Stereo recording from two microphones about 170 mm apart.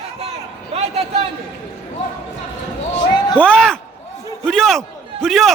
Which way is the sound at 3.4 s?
5° left (ahead or behind).